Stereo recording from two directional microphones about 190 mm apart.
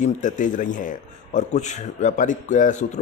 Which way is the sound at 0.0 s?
40° left (ahead or behind).